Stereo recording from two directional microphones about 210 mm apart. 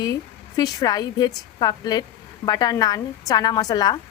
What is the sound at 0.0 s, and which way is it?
A woman's voice, 20° left (ahead or behind).